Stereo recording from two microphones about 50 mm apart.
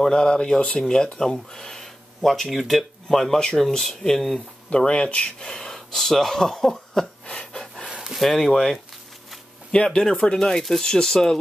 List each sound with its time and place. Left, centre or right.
0.0 s speech: centre
4.6 s speech: centre
8.1 s speech: centre